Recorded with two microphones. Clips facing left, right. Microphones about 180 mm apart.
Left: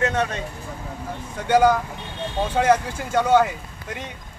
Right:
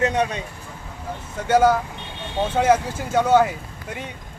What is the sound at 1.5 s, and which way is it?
A man's voice, 5° right (ahead or behind).